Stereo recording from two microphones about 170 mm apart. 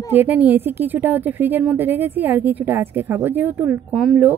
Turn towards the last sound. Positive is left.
turn(degrees=-5)  # may be behind; listen again after turning